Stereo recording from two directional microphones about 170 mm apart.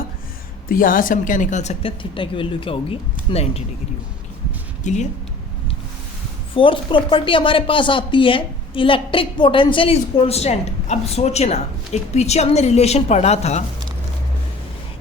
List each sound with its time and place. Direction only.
0.7 s a woman's voice: 55° left (ahead or behind)
2.0 s speech: 30° left (ahead or behind)
4.8 s speech: 45° left (ahead or behind)
6.5 s speech: 30° left (ahead or behind)